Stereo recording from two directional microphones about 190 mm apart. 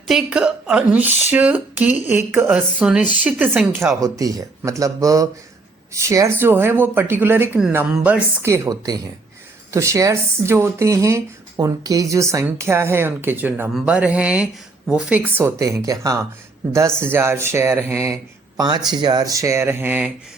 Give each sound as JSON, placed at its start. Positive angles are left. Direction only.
{"t": 0.1, "sound": "speech", "side_deg": -5}